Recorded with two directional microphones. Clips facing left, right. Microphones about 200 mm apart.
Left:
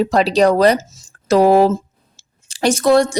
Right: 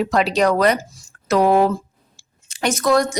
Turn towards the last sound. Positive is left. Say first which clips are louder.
# left 4 dB
turn(degrees=30)  # may be behind; listen again after turning